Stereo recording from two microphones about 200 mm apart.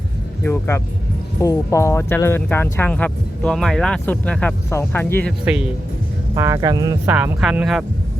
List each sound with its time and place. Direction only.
1.4 s speech: 15° left (ahead or behind)
6.3 s speech: 15° right (ahead or behind)
7.2 s speech: 5° right (ahead or behind)